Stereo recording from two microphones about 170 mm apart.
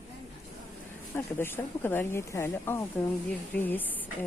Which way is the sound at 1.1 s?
15° left (ahead or behind).